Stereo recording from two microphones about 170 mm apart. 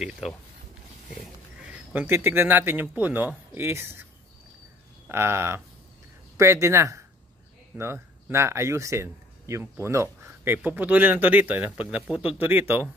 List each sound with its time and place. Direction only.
0.0 s speech: centre (ahead or behind)
2.0 s speech: 10° right (ahead or behind)